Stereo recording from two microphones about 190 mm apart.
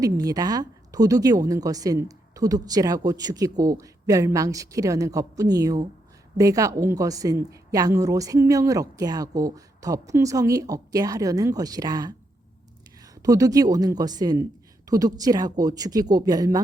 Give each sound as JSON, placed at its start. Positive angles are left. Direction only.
{"t": 0.0, "sound": "a woman's voice", "side_deg": -20}
{"t": 13.2, "sound": "a woman's voice", "side_deg": -20}